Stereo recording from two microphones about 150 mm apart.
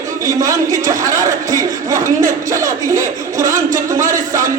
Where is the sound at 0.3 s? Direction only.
20° right (ahead or behind).